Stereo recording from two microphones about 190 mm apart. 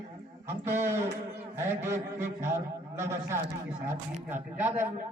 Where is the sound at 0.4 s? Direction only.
15° right (ahead or behind).